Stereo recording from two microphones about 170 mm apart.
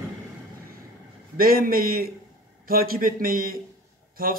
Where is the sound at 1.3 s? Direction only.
60° right (ahead or behind).